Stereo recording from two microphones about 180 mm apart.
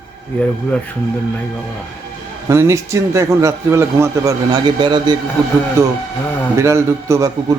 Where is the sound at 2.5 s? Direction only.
15° right (ahead or behind).